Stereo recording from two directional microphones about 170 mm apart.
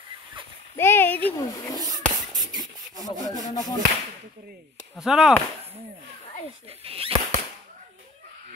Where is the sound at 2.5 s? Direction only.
25° right (ahead or behind).